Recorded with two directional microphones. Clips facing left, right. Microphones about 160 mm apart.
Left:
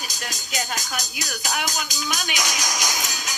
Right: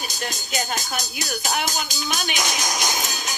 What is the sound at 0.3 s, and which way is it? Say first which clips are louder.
Speech: right 1 dB; 25° right (ahead or behind).